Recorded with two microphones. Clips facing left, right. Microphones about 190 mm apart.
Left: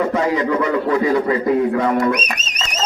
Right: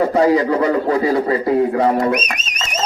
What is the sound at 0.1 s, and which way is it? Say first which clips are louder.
A man's voice: right 4 dB; 35° right (ahead or behind).